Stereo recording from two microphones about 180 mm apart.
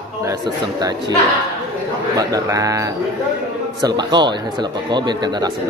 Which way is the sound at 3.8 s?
25° right (ahead or behind).